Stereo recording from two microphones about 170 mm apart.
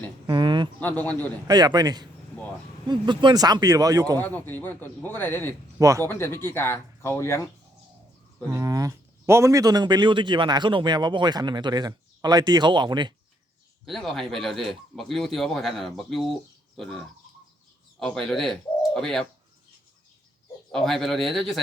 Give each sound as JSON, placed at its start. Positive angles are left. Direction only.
{"t": 0.3, "sound": "speech", "side_deg": -25}
{"t": 0.8, "sound": "speech", "side_deg": 10}
{"t": 1.5, "sound": "speech", "side_deg": -25}
{"t": 4.2, "sound": "speech", "side_deg": 10}
{"t": 5.8, "sound": "speech", "side_deg": -20}
{"t": 6.1, "sound": "speech", "side_deg": 15}
{"t": 8.4, "sound": "speech", "side_deg": -20}
{"t": 13.8, "sound": "speech", "side_deg": 0}
{"t": 18.0, "sound": "speech", "side_deg": 5}
{"t": 20.7, "sound": "speech", "side_deg": 0}